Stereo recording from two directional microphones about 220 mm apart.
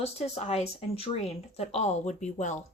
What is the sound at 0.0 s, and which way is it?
Speech, 30° left (ahead or behind).